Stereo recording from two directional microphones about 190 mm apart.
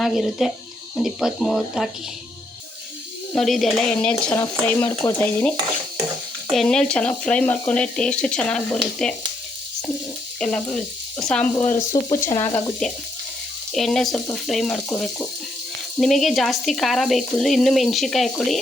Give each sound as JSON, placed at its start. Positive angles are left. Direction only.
{"t": 0.0, "sound": "speech", "side_deg": 0}
{"t": 3.3, "sound": "speech", "side_deg": 0}
{"t": 4.3, "sound": "stir", "side_deg": 5}
{"t": 6.5, "sound": "speech", "side_deg": 0}
{"t": 10.4, "sound": "speech", "side_deg": 5}
{"t": 12.0, "sound": "stir", "side_deg": 20}
{"t": 13.7, "sound": "speech", "side_deg": 0}